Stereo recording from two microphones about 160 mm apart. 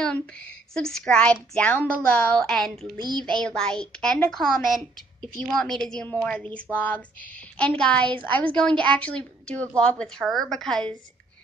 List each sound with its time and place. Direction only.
0.0 s a woman's voice: 5° left (ahead or behind)
2.8 s child singing: 30° right (ahead or behind)
3.3 s a woman's voice: 5° left (ahead or behind)